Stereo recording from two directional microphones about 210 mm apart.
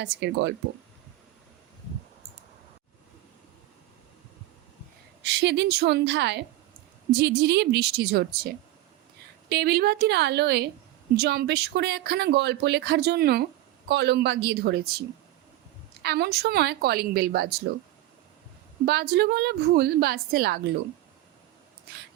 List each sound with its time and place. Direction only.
0.0 s speech: 55° right (ahead or behind)
5.2 s a woman's voice: 55° right (ahead or behind)
9.5 s speech: 50° right (ahead or behind)
16.0 s speech: 50° right (ahead or behind)
18.9 s speech: 50° right (ahead or behind)